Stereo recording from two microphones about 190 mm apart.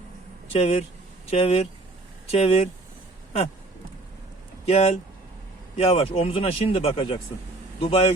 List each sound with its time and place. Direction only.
0.6 s speech: 35° left (ahead or behind)
4.6 s speech: 35° left (ahead or behind)